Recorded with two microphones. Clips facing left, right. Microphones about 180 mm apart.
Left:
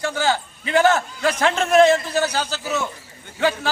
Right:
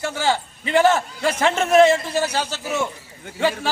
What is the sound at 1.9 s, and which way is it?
Speech, 30° right (ahead or behind).